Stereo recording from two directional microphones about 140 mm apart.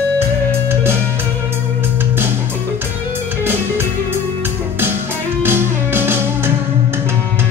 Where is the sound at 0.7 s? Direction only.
15° right (ahead or behind).